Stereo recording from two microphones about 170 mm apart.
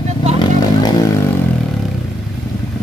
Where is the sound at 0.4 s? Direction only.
25° left (ahead or behind).